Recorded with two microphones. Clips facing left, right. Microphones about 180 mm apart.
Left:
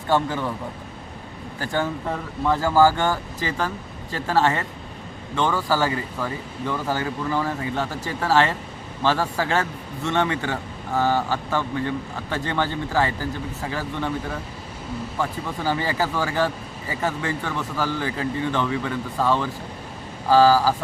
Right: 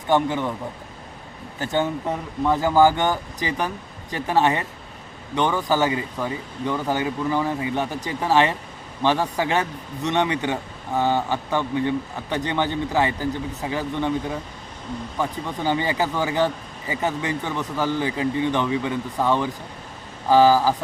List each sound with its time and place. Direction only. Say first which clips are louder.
0.1 s speech: right 2 dB; 20° right (ahead or behind)
1.5 s speech: right 2 dB; 20° right (ahead or behind)